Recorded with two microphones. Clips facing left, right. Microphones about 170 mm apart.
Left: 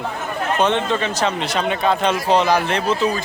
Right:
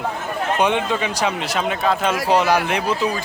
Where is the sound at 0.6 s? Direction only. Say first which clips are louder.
Left 1 dB; 10° right (ahead or behind).